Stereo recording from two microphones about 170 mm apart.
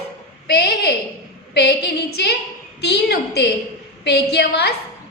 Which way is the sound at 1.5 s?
75° left (ahead or behind).